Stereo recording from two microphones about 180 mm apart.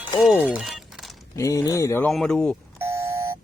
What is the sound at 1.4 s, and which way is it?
Speech, 15° left (ahead or behind).